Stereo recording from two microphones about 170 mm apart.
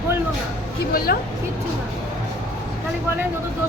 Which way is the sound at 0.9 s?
60° left (ahead or behind).